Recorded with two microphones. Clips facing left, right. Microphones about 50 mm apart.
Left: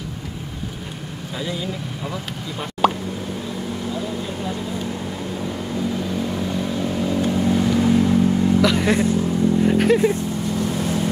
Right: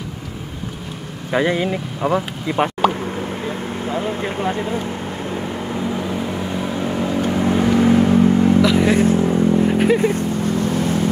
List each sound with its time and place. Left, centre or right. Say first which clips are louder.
1.3 s speech: right 10 dB; right
3.4 s vehicle: right 3 dB; right
5.3 s vehicle: right 2 dB; right
8.6 s speech: right 3 dB; centre
9.0 s vehicle: right 4 dB; right
9.6 s a sound: right 1 dB; centre
10.4 s vehicle: right 4 dB; right